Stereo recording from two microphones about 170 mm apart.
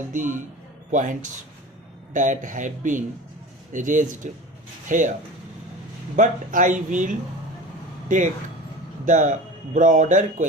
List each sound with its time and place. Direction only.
0.1 s speech: 50° right (ahead or behind)
6.1 s speech: 50° right (ahead or behind)